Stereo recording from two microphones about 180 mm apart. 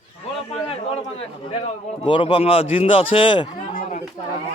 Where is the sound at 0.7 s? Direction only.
35° left (ahead or behind).